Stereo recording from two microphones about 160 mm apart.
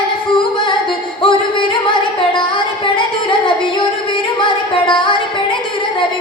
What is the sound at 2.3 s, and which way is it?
Music, 30° left (ahead or behind).